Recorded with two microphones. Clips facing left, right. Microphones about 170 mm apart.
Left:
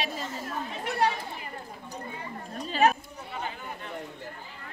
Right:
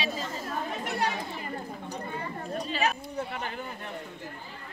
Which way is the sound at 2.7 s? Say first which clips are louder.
Left 7 dB; 45° left (ahead or behind).